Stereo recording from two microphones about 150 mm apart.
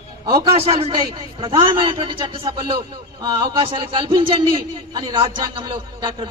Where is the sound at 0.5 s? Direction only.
40° right (ahead or behind).